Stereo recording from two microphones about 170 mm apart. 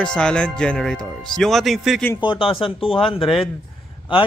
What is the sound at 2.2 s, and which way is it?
Speech, 30° left (ahead or behind).